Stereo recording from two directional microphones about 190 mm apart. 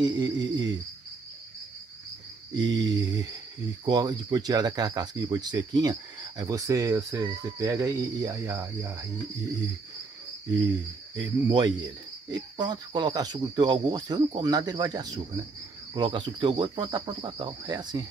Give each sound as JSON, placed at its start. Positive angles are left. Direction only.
{"t": 0.0, "sound": "speech", "side_deg": -25}
{"t": 2.5, "sound": "speech", "side_deg": -20}
{"t": 11.2, "sound": "speech", "side_deg": -20}